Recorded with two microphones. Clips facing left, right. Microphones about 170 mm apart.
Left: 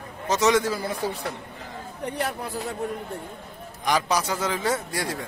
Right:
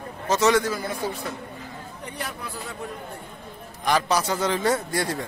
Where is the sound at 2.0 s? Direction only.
55° left (ahead or behind).